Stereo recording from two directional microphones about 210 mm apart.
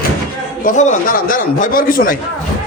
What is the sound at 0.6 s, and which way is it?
A man's voice, 35° left (ahead or behind).